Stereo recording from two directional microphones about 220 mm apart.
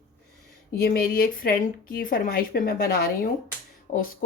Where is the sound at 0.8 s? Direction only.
45° left (ahead or behind).